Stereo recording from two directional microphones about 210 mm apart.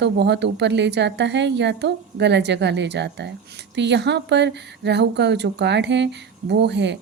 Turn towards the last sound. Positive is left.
turn(degrees=-55)  # may be behind; listen again after turning